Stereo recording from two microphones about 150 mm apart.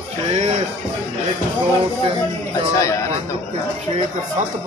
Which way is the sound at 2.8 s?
20° left (ahead or behind).